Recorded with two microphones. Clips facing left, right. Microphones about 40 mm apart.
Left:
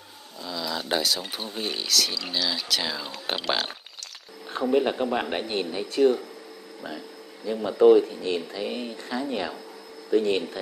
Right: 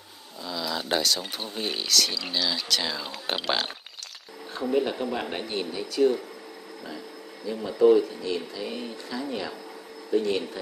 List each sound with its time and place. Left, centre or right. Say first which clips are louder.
0.4 s speech: even; centre
4.7 s a man's voice: left 2 dB; left
7.4 s a man's voice: left 2 dB; left